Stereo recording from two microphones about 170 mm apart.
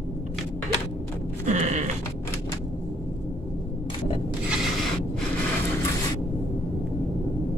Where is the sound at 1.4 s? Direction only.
45° right (ahead or behind).